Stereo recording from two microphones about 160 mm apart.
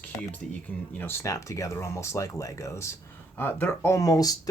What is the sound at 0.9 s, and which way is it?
Speech, 15° left (ahead or behind).